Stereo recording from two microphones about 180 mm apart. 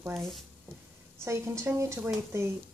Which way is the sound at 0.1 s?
Centre (ahead or behind).